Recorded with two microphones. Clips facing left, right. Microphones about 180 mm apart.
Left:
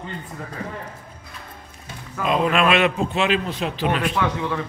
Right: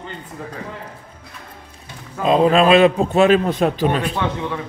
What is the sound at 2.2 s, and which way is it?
A man's voice, 30° right (ahead or behind).